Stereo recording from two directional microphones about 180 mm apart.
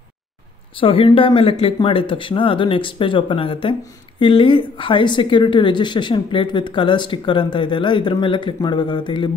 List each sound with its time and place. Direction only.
0.7 s a woman's voice: 30° left (ahead or behind)